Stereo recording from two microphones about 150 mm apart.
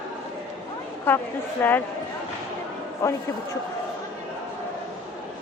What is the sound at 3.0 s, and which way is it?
Speech, 20° left (ahead or behind).